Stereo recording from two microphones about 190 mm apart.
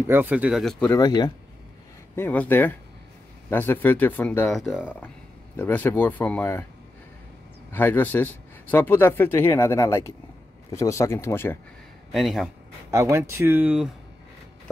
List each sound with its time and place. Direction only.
0.1 s speech: 10° right (ahead or behind)
0.8 s speech: 20° left (ahead or behind)
2.1 s speech: 10° left (ahead or behind)
5.6 s speech: 10° left (ahead or behind)
7.7 s speech: 10° left (ahead or behind)
12.1 s speech: centre (ahead or behind)
12.9 s speech: 15° right (ahead or behind)